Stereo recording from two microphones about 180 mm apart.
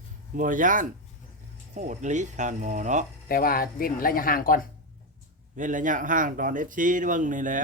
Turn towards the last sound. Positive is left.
turn(degrees=-45)  # may be behind; listen again after turning